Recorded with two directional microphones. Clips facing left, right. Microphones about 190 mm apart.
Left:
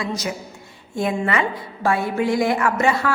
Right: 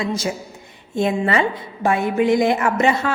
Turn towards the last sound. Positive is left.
turn(degrees=-20)  # may be behind; listen again after turning